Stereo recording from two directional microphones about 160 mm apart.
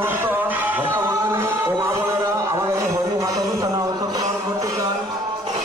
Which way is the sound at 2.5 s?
20° right (ahead or behind).